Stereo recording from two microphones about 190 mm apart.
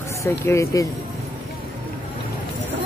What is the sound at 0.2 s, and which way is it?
Speech, 15° left (ahead or behind).